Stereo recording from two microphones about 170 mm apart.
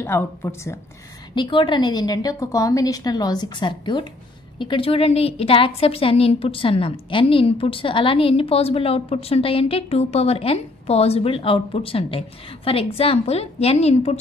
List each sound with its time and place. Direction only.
0.0 s speech: 15° left (ahead or behind)
1.3 s a woman's voice: 30° left (ahead or behind)